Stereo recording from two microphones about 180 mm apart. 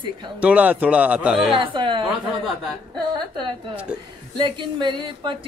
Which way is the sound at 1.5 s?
25° right (ahead or behind).